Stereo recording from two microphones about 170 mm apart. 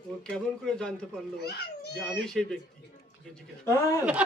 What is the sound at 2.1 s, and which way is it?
Speech, 5° left (ahead or behind).